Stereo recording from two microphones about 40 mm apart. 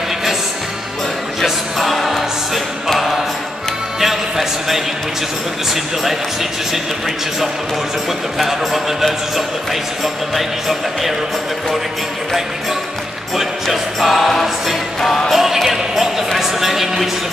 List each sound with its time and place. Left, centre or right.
1.4 s music: centre
4.0 s a sound: centre
8.4 s speech: centre
13.4 s speech: centre
15.0 s music: centre
15.3 s basketball bounce: centre
16.3 s a man's voice: centre